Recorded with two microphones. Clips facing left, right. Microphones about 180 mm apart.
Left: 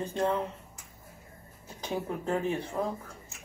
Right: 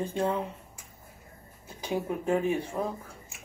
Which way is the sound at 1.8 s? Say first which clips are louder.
Right 3 dB; 10° right (ahead or behind).